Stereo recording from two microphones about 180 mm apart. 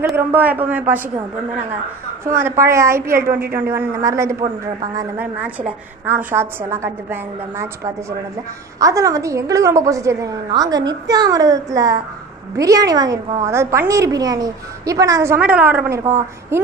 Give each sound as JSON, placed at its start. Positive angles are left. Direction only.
{"t": 0.1, "sound": "a woman's voice", "side_deg": -10}
{"t": 2.3, "sound": "a woman's voice", "side_deg": -15}